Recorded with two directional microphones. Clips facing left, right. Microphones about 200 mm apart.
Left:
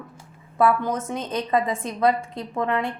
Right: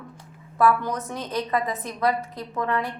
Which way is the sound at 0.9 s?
25° left (ahead or behind).